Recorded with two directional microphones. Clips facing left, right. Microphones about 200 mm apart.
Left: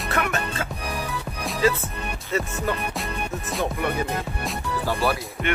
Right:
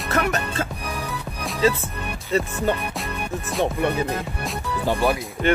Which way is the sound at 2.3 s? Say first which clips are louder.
Right 4 dB; 35° right (ahead or behind).